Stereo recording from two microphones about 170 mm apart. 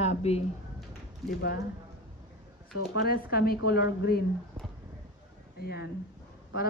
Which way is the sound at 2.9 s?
65° left (ahead or behind).